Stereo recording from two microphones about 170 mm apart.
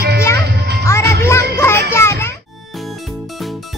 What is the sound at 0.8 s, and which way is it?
Music, 15° left (ahead or behind).